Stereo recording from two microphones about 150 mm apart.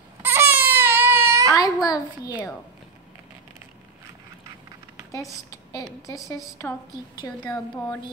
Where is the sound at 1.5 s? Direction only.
25° left (ahead or behind).